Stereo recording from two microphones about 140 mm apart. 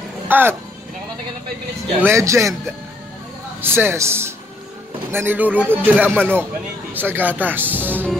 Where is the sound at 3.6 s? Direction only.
15° right (ahead or behind).